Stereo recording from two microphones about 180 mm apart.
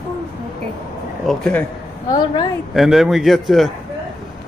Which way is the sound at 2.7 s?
Centre (ahead or behind).